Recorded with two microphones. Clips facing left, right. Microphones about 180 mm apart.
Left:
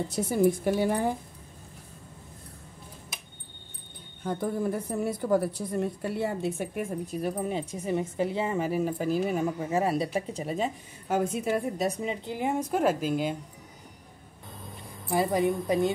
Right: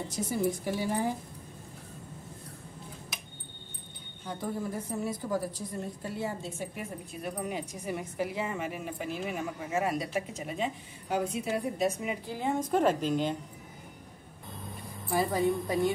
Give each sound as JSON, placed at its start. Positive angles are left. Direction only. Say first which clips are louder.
{"t": 0.1, "sound": "a woman's voice", "louder": "left 6 dB", "side_deg": 60}
{"t": 4.2, "sound": "a woman's voice", "louder": "left 6 dB", "side_deg": 55}
{"t": 12.3, "sound": "a woman's voice", "louder": "left 1 dB", "side_deg": 15}
{"t": 15.0, "sound": "a woman's voice", "louder": "left 2 dB", "side_deg": 20}